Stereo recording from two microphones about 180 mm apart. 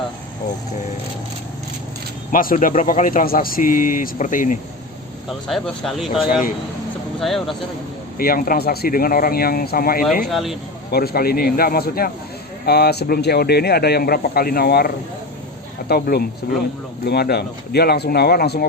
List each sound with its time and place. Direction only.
2.3 s speech: 50° left (ahead or behind)
5.5 s speech: centre (ahead or behind)
8.2 s speech: 50° left (ahead or behind)
10.3 s speech: centre (ahead or behind)
10.9 s speech: 60° left (ahead or behind)